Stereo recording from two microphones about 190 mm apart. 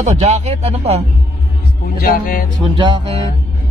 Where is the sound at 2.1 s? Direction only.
50° left (ahead or behind).